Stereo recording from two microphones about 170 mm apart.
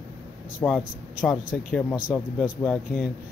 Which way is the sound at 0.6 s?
5° left (ahead or behind).